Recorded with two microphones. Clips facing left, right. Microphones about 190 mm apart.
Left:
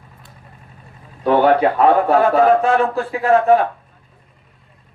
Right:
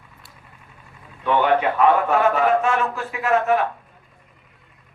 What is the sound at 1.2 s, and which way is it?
Speech, 40° left (ahead or behind).